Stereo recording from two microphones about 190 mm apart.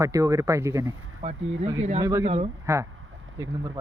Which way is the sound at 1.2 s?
35° right (ahead or behind).